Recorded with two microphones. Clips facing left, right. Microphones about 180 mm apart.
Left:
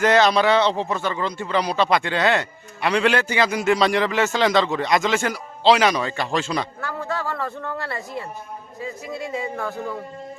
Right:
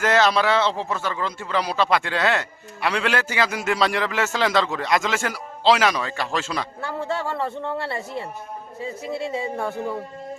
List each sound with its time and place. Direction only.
0.0 s speech: centre (ahead or behind)
6.8 s a woman's voice: 25° right (ahead or behind)